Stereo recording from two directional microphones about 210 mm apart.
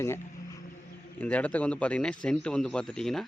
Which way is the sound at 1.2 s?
5° left (ahead or behind).